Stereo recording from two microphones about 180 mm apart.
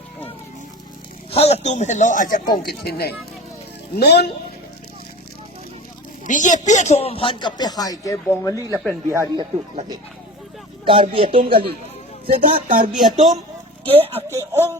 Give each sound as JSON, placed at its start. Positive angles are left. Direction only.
{"t": 1.3, "sound": "speech", "side_deg": 35}
{"t": 6.2, "sound": "speech", "side_deg": 45}
{"t": 9.0, "sound": "speech", "side_deg": -20}
{"t": 10.8, "sound": "speech", "side_deg": -30}
{"t": 12.3, "sound": "speech", "side_deg": -55}
{"t": 12.9, "sound": "a woman's voice", "side_deg": 0}
{"t": 13.8, "sound": "speech", "side_deg": -30}
{"t": 14.3, "sound": "speech", "side_deg": -15}